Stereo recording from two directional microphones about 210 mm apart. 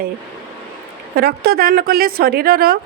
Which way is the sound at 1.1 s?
45° right (ahead or behind).